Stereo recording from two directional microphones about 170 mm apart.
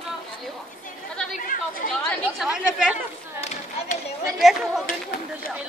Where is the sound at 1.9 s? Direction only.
5° left (ahead or behind).